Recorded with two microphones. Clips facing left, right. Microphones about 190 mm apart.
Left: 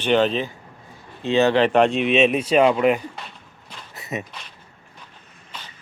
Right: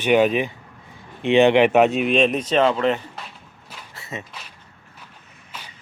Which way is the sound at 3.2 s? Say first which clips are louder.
Even; 5° right (ahead or behind).